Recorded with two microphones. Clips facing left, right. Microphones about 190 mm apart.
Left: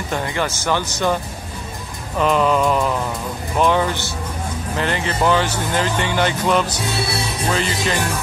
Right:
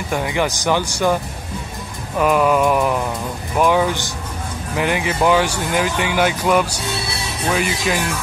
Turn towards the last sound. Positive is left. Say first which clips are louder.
# right 1 dB
turn(degrees=-10)  # may be behind; listen again after turning